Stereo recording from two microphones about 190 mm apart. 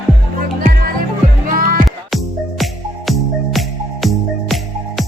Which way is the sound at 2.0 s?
Centre (ahead or behind).